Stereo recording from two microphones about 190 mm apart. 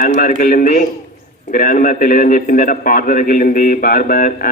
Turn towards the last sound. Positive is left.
turn(degrees=45)  # may be behind; listen again after turning